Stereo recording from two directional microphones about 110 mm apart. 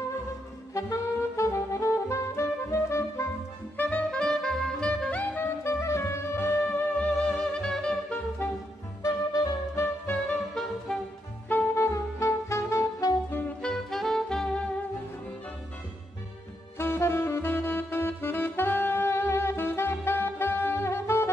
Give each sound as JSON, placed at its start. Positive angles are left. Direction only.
{"t": 0.7, "sound": "saxophone", "side_deg": 30}
{"t": 3.7, "sound": "saxophone", "side_deg": 15}
{"t": 9.0, "sound": "music", "side_deg": 35}
{"t": 9.8, "sound": "music", "side_deg": 20}
{"t": 10.9, "sound": "music", "side_deg": 5}
{"t": 11.4, "sound": "saxophone", "side_deg": 20}
{"t": 16.7, "sound": "saxophone", "side_deg": 20}